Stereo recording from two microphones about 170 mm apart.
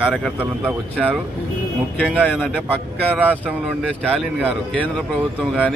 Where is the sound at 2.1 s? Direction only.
Centre (ahead or behind).